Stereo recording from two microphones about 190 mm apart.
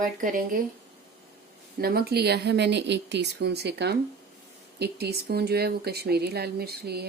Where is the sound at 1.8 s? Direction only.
55° right (ahead or behind).